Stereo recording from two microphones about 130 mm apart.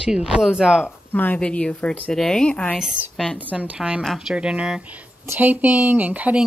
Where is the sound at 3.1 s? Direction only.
5° left (ahead or behind).